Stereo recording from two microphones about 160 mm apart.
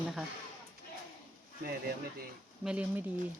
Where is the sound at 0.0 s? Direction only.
Centre (ahead or behind).